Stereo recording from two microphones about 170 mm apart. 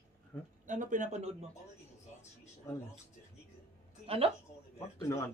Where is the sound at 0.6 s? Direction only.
50° right (ahead or behind).